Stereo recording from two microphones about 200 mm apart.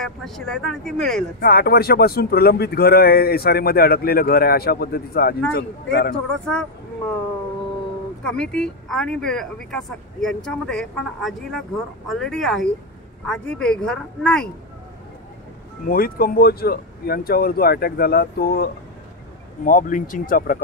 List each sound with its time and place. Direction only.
0.0 s speech: centre (ahead or behind)
1.4 s speech: 50° left (ahead or behind)
6.4 s speech: 5° left (ahead or behind)
8.2 s speech: 5° left (ahead or behind)
15.9 s speech: 45° left (ahead or behind)